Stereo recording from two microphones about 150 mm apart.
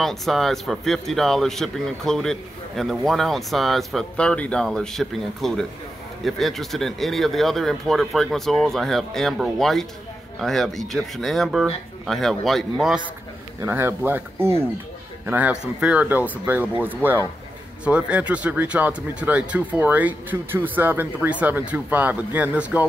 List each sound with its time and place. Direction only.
0.0 s speech: centre (ahead or behind)
13.6 s speech: 15° right (ahead or behind)